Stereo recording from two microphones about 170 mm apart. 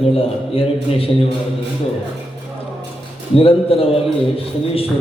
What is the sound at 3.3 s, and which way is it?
A man's voice, 35° left (ahead or behind).